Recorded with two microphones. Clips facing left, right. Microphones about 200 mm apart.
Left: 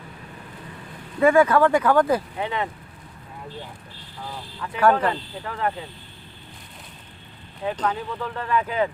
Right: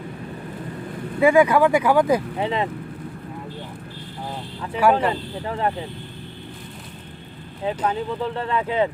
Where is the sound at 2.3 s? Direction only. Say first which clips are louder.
Right 4 dB; 30° right (ahead or behind).